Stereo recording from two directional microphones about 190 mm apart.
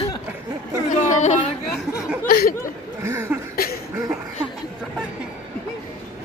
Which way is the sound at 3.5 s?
50° left (ahead or behind).